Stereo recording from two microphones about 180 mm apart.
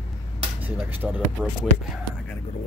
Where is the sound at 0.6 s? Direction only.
10° right (ahead or behind).